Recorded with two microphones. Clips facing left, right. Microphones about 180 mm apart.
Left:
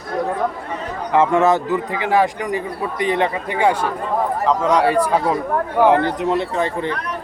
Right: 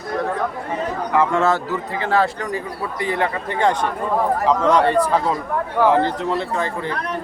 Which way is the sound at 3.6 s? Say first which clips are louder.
Left 1 dB; 5° left (ahead or behind).